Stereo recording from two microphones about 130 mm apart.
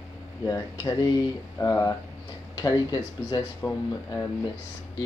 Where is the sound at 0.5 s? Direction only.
25° left (ahead or behind).